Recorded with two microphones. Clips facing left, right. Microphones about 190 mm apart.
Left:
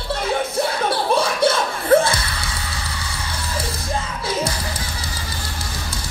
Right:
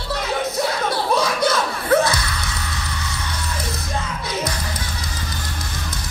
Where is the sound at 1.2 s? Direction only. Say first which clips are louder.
Left 1 dB; 30° left (ahead or behind).